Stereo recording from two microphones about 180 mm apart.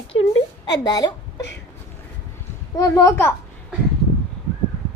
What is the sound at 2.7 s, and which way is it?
Speech, 15° left (ahead or behind).